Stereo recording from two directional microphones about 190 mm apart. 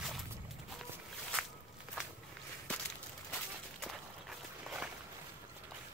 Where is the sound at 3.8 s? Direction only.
5° right (ahead or behind).